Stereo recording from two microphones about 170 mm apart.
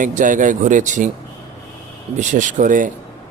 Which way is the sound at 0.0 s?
50° right (ahead or behind).